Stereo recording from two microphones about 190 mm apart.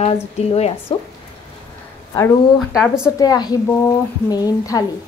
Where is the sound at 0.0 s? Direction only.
35° left (ahead or behind).